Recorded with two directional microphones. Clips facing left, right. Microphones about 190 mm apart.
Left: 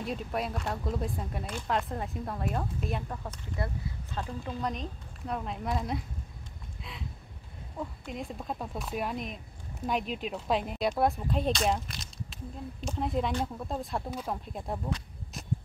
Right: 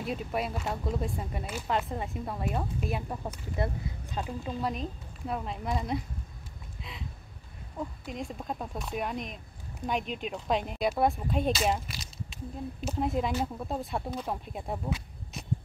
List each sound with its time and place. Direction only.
0.0 s speech: 5° right (ahead or behind)
3.5 s speech: 20° right (ahead or behind)
4.5 s speech: 5° right (ahead or behind)
6.8 s a sound: centre (ahead or behind)
7.7 s speech: centre (ahead or behind)